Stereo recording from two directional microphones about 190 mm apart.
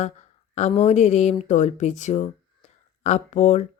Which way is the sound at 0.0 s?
35° left (ahead or behind).